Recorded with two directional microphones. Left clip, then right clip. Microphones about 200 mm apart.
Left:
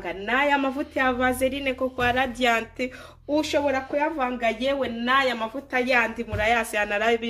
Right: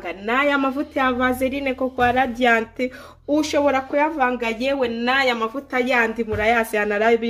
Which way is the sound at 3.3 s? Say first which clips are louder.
Right 4 dB; 55° right (ahead or behind).